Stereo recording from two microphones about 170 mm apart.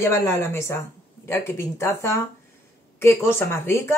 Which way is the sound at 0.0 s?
15° left (ahead or behind).